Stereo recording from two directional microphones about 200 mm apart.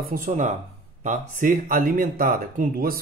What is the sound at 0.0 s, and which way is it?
Speech, 45° right (ahead or behind).